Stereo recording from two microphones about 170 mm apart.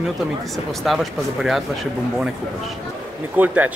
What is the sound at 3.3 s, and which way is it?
Speech, 10° right (ahead or behind).